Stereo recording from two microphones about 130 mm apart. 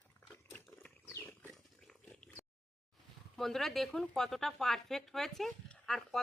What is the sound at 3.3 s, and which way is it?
Speech, centre (ahead or behind).